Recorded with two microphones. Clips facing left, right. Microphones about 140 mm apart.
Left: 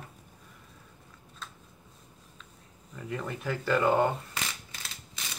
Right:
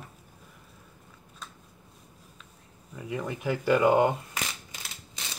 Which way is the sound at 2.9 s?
10° right (ahead or behind).